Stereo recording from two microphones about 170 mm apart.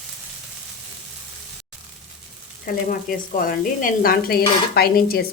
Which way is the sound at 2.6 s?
55° left (ahead or behind).